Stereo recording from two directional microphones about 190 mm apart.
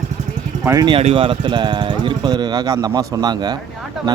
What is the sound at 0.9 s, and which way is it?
Speech, 30° right (ahead or behind).